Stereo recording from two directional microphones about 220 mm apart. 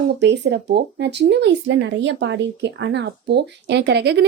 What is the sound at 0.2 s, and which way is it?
Speech, 50° right (ahead or behind).